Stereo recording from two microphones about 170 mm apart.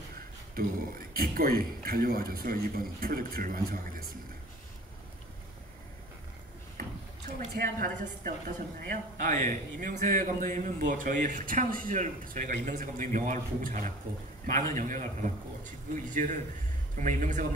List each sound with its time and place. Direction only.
0.6 s a man's voice: 60° right (ahead or behind)
7.2 s speech: 55° right (ahead or behind)